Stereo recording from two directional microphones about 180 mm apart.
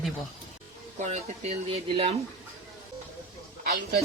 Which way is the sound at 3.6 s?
55° right (ahead or behind).